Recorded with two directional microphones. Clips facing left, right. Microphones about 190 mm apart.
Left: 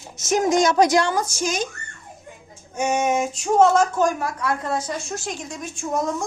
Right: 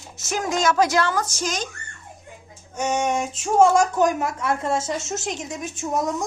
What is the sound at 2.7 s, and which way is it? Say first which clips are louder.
Speech: left 2 dB; 10° left (ahead or behind).